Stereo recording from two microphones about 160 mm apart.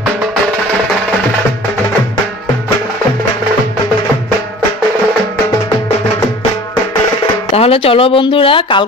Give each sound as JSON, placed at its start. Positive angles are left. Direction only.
{"t": 7.5, "sound": "speech", "side_deg": 35}